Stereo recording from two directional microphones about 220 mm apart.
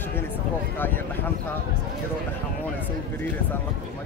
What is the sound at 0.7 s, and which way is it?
Speech, 10° left (ahead or behind).